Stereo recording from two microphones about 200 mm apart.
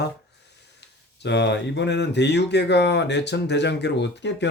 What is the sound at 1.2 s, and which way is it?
Speech, 60° left (ahead or behind).